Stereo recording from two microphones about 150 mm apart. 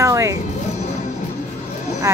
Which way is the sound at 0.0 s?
20° right (ahead or behind).